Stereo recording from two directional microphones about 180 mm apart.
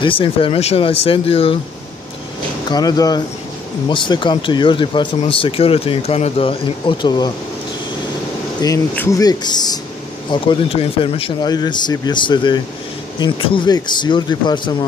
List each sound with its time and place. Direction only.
0.0 s speech: 30° left (ahead or behind)
2.7 s speech: 20° left (ahead or behind)
8.5 s speech: 20° left (ahead or behind)